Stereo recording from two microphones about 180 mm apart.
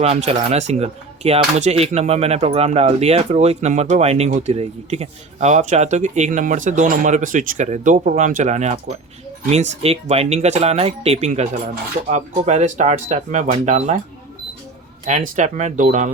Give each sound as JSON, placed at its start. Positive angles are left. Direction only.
{"t": 0.0, "sound": "speech", "side_deg": -35}
{"t": 15.0, "sound": "speech", "side_deg": -45}